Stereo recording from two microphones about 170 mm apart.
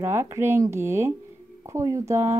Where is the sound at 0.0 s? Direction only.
15° right (ahead or behind).